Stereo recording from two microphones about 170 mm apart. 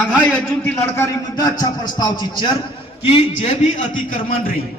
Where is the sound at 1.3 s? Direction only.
25° left (ahead or behind).